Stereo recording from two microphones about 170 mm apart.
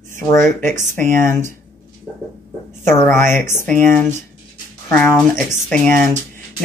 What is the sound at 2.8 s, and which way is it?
Speech, 15° left (ahead or behind).